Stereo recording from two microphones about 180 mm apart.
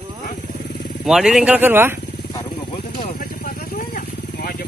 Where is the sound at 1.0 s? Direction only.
5° right (ahead or behind).